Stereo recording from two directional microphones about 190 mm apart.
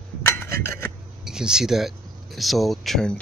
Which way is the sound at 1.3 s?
5° right (ahead or behind).